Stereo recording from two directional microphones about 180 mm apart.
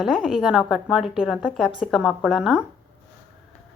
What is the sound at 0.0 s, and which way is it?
A woman's voice, centre (ahead or behind).